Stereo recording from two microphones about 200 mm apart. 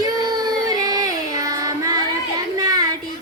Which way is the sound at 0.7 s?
20° right (ahead or behind).